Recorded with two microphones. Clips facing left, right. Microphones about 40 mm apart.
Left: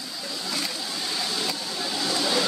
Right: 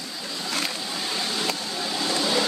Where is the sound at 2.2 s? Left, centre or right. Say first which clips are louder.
Right 1 dB; centre.